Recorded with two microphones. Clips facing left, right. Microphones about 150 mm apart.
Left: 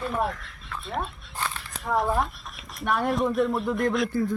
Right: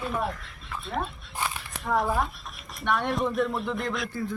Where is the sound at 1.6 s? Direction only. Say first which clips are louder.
Left 1 dB; centre (ahead or behind).